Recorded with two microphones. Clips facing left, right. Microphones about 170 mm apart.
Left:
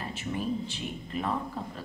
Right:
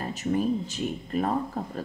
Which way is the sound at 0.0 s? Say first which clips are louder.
Right 7 dB; 40° right (ahead or behind).